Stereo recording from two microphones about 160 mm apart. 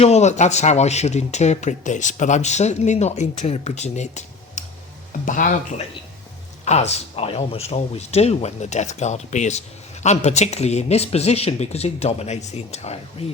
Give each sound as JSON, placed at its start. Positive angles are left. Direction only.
{"t": 0.0, "sound": "speech", "side_deg": 45}
{"t": 6.7, "sound": "speech", "side_deg": 45}